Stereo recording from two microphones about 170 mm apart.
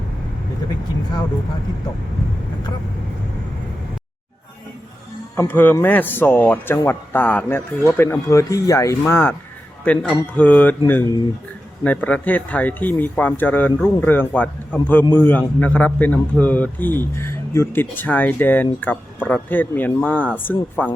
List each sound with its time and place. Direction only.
5.4 s a man's voice: 10° left (ahead or behind)